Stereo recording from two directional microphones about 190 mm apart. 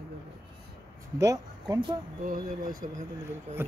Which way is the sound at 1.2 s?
20° right (ahead or behind).